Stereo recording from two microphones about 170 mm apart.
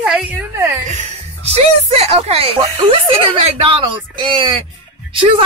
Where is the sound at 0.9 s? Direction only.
40° right (ahead or behind).